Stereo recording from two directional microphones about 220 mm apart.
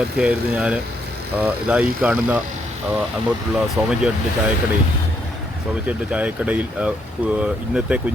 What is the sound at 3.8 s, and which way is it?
Speech, 5° right (ahead or behind).